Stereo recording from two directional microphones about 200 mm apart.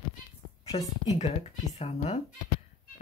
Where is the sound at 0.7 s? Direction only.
30° left (ahead or behind).